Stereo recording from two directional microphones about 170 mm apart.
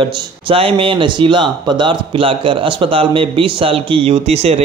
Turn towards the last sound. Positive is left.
turn(degrees=-35)  # may be behind; listen again after turning